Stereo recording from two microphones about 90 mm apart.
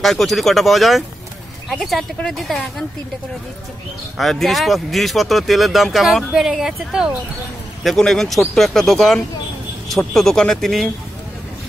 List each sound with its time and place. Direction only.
0.0 s speech: centre (ahead or behind)
2.1 s speech: 5° left (ahead or behind)
4.2 s speech: centre (ahead or behind)